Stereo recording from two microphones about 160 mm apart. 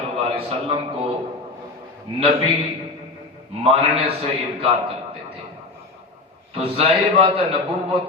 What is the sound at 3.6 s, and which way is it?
Speech, 40° right (ahead or behind).